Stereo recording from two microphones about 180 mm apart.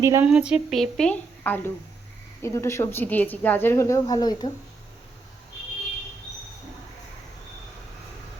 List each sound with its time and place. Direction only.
0.0 s speech: 15° right (ahead or behind)
0.3 s a woman's voice: 5° right (ahead or behind); by 4.5 s 25° left (ahead or behind)